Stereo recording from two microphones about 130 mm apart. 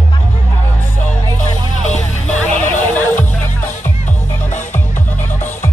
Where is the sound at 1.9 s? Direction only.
60° left (ahead or behind).